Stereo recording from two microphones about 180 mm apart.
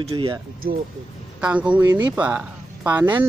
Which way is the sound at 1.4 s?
5° right (ahead or behind).